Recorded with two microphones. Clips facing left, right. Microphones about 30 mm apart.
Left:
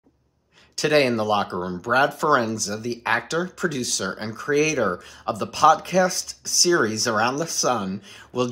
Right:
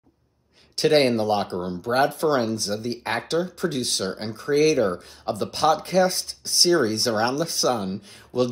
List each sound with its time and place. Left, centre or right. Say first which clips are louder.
0.8 s speech: even; centre
4.0 s speech: even; centre
4.3 s speech: right 2 dB; right